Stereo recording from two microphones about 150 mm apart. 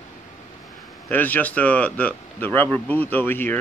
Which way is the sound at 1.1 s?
10° left (ahead or behind).